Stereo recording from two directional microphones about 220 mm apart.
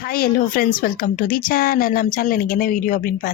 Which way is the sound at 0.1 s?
40° left (ahead or behind).